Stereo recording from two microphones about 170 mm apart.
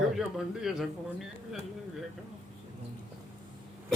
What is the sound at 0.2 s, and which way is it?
Speech, 5° right (ahead or behind).